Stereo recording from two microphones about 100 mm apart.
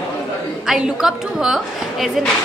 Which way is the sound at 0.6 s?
5° right (ahead or behind).